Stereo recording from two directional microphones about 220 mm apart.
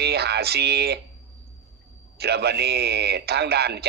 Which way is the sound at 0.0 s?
45° right (ahead or behind).